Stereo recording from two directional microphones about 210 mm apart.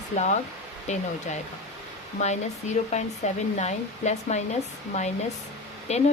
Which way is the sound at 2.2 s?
35° left (ahead or behind).